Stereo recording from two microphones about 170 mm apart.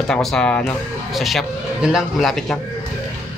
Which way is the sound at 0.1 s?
5° left (ahead or behind).